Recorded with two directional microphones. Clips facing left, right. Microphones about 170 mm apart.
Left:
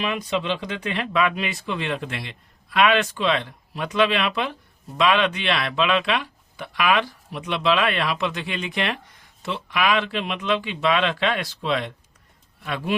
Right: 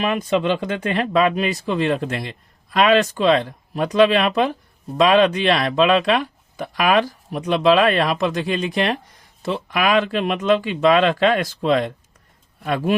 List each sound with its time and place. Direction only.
0.0 s speech: 45° right (ahead or behind)